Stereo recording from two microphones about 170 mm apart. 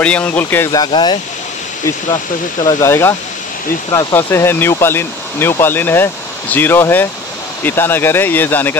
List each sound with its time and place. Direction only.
0.0 s speech: 5° left (ahead or behind)
0.7 s speech: 25° left (ahead or behind)
2.6 s speech: 15° left (ahead or behind)